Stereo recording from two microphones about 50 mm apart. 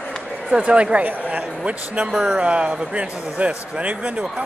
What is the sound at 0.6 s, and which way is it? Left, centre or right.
A woman's voice, right.